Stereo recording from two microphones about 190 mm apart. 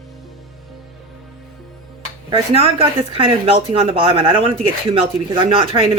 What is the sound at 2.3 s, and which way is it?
Speech, 30° right (ahead or behind).